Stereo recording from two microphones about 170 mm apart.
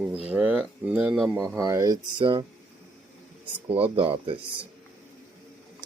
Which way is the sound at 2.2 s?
30° right (ahead or behind).